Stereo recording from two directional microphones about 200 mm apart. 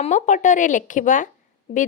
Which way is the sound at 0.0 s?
35° left (ahead or behind).